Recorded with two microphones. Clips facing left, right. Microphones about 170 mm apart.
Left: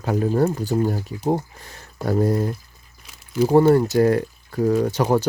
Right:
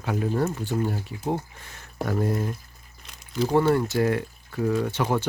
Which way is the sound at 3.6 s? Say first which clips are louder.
Left 6 dB; 35° left (ahead or behind).